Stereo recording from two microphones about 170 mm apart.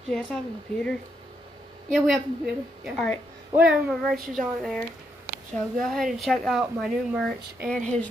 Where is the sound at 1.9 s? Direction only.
Centre (ahead or behind).